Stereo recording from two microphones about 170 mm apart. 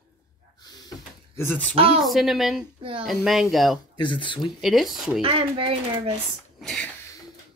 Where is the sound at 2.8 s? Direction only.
30° right (ahead or behind).